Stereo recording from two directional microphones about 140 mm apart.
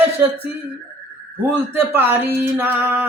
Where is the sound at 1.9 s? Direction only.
15° right (ahead or behind).